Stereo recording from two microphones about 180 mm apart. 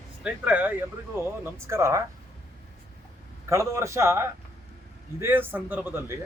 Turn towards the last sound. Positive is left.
turn(degrees=-10)  # may be behind; listen again after turning